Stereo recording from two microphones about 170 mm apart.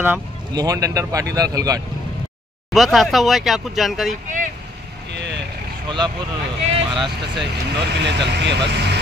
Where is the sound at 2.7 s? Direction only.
Centre (ahead or behind).